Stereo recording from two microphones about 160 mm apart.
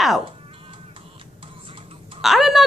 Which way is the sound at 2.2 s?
Centre (ahead or behind).